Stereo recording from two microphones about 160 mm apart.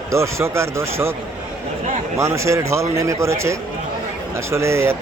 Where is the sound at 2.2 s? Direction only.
20° right (ahead or behind).